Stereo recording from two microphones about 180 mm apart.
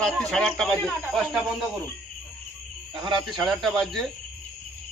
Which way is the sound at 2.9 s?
25° right (ahead or behind).